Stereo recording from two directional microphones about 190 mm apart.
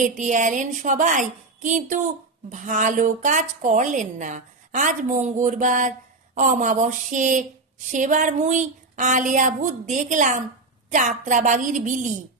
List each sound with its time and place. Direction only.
0.0 s a woman's voice: 40° right (ahead or behind)